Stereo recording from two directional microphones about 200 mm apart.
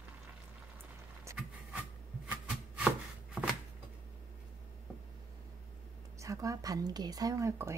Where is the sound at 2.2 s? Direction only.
5° right (ahead or behind).